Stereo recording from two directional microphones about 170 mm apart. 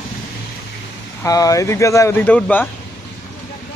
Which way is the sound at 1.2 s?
20° left (ahead or behind).